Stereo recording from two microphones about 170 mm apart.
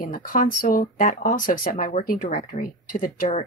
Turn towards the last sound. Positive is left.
turn(degrees=50)  # may be behind; listen again after turning